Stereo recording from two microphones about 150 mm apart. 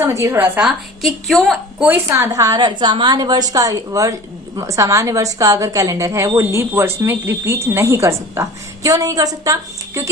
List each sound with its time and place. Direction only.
0.0 s a woman's voice: 20° right (ahead or behind)
0.6 s a woman's voice: centre (ahead or behind)
1.8 s a woman's voice: 15° right (ahead or behind)